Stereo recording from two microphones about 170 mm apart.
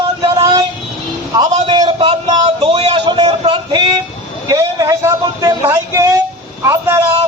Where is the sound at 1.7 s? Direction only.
30° right (ahead or behind).